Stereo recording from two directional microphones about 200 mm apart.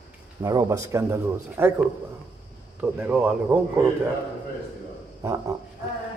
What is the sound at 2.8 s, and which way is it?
Speech, 10° right (ahead or behind).